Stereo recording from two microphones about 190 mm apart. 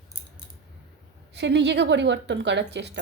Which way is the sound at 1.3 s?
65° right (ahead or behind).